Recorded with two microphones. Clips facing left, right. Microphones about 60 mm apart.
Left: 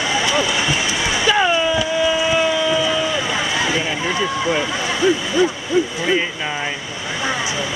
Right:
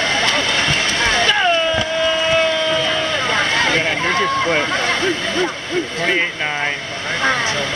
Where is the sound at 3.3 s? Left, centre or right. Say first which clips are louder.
Right 3 dB; right.